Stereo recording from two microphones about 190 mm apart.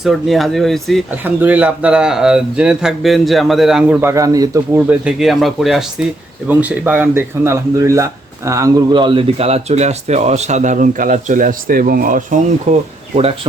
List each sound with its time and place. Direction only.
0.0 s speech: centre (ahead or behind)
1.2 s speech: 10° right (ahead or behind); by 13.5 s 30° right (ahead or behind)